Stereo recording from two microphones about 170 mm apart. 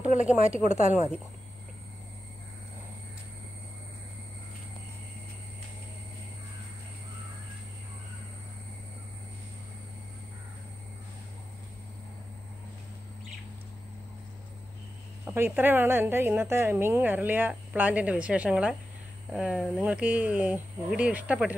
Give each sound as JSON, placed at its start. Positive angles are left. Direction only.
{"t": 0.3, "sound": "a woman's voice", "side_deg": -5}
{"t": 0.7, "sound": "speech", "side_deg": -40}
{"t": 15.2, "sound": "a woman's voice", "side_deg": -10}